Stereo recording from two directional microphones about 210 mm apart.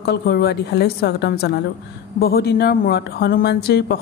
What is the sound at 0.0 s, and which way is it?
Speech, 50° left (ahead or behind).